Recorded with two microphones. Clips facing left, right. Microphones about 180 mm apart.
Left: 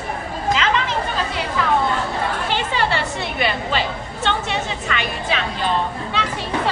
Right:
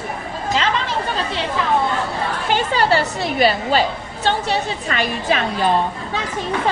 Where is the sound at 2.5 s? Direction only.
40° right (ahead or behind).